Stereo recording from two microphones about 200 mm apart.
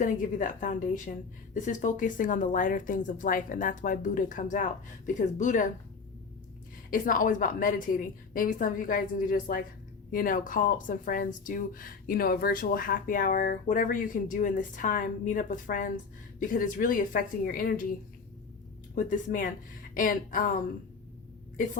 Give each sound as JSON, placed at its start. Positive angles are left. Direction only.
{"t": 0.0, "sound": "speech", "side_deg": 40}
{"t": 6.9, "sound": "speech", "side_deg": 40}
{"t": 18.9, "sound": "speech", "side_deg": 40}